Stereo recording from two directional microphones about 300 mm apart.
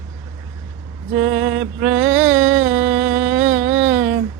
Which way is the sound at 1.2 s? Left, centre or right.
Centre.